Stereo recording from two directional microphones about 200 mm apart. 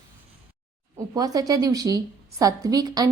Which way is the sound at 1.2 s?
20° right (ahead or behind).